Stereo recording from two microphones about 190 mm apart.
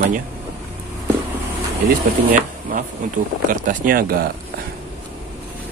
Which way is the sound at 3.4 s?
45° right (ahead or behind).